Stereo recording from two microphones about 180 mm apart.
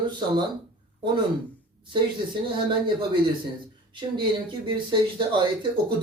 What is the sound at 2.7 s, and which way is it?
Speech, 25° right (ahead or behind).